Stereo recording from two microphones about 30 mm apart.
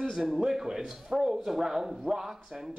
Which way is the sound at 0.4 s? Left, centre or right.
Centre.